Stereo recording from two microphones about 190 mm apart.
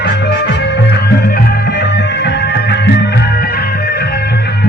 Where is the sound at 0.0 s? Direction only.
60° left (ahead or behind).